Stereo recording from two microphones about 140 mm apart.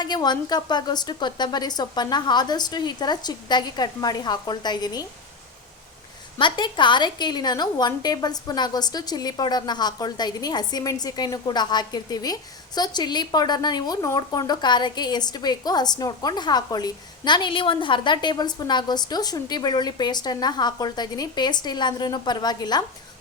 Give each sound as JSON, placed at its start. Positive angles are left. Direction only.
{"t": 0.0, "sound": "a woman's voice", "side_deg": 30}
{"t": 6.4, "sound": "a woman's voice", "side_deg": 35}